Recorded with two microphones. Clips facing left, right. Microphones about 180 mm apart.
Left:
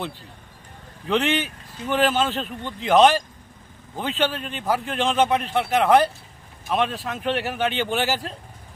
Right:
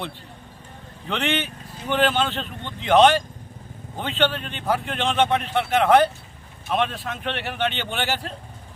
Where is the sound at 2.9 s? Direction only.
Centre (ahead or behind).